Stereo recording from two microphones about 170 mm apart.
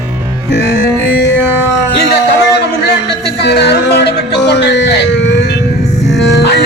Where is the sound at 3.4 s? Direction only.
75° left (ahead or behind).